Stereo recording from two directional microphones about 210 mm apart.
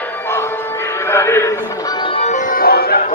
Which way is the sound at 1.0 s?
10° left (ahead or behind).